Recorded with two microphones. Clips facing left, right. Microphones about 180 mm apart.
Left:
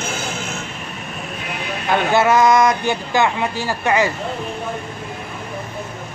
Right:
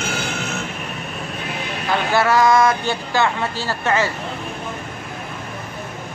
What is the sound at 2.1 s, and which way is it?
A woman's voice, 20° left (ahead or behind).